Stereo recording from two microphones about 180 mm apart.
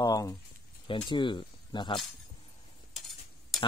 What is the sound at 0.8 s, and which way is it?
Speech, 25° left (ahead or behind).